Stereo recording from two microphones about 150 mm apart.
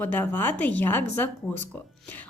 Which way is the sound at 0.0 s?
10° left (ahead or behind).